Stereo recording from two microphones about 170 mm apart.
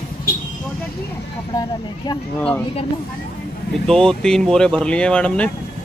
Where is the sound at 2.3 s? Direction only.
10° left (ahead or behind).